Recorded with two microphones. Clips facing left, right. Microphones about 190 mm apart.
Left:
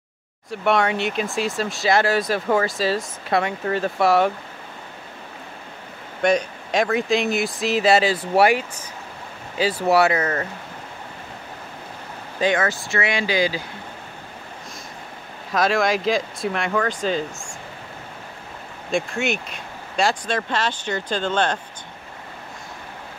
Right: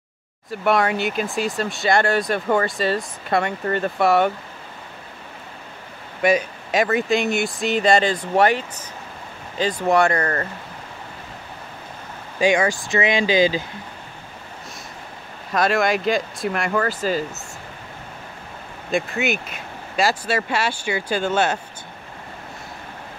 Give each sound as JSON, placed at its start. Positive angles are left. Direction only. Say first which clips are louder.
{"t": 0.5, "sound": "speech", "louder": "right 1 dB", "side_deg": 0}
{"t": 6.2, "sound": "speech", "louder": "right 1 dB", "side_deg": -5}
{"t": 12.4, "sound": "speech", "louder": "right 3 dB", "side_deg": -15}
{"t": 15.5, "sound": "speech", "louder": "even", "side_deg": 0}
{"t": 18.9, "sound": "speech", "louder": "right 1 dB", "side_deg": 0}